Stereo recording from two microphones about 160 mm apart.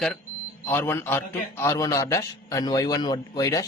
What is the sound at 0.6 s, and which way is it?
A man's voice, 15° left (ahead or behind).